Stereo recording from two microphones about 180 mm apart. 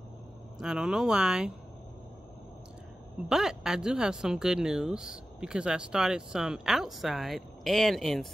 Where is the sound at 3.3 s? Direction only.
5° right (ahead or behind).